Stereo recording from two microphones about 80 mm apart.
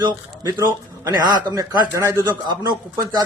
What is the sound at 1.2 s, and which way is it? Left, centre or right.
A man's voice, right.